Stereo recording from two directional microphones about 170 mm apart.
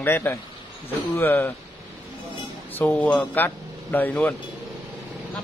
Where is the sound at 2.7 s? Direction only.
10° left (ahead or behind).